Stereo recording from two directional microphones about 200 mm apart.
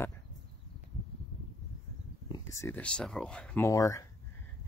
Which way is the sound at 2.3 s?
15° left (ahead or behind).